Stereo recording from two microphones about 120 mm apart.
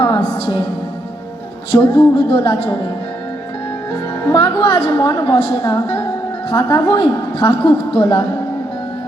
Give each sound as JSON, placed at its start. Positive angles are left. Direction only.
{"t": 0.0, "sound": "music", "side_deg": 45}
{"t": 1.7, "sound": "a woman's voice", "side_deg": 45}
{"t": 4.4, "sound": "a woman's voice", "side_deg": 40}